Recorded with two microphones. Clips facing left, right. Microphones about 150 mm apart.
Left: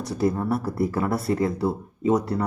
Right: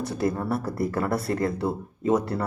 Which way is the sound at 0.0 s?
Centre (ahead or behind).